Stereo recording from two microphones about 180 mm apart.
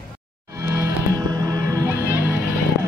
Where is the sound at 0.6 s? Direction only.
15° right (ahead or behind).